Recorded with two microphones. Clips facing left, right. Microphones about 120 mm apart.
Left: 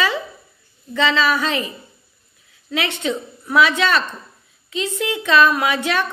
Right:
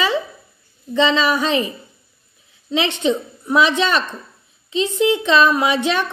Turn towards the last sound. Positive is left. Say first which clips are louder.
# right 2 dB
turn(degrees=-20)  # may be behind; listen again after turning